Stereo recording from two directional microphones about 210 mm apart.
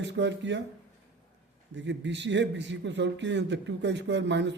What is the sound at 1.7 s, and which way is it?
A man's voice, 55° right (ahead or behind).